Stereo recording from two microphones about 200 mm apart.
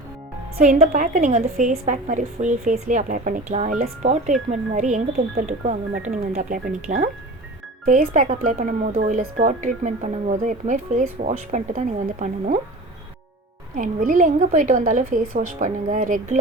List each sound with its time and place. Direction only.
0.5 s a woman's voice: 45° right (ahead or behind)
13.7 s speech: 40° right (ahead or behind)